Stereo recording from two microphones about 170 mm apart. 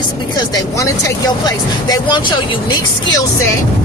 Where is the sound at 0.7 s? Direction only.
20° left (ahead or behind).